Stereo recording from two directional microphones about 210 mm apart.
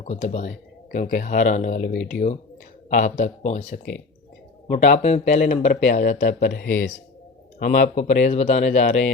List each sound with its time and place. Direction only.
0.0 s speech: 35° left (ahead or behind)